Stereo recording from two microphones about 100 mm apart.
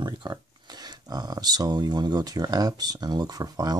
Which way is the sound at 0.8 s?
40° right (ahead or behind).